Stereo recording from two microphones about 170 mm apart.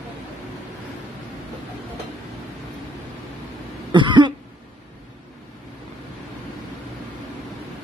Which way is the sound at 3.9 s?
25° right (ahead or behind).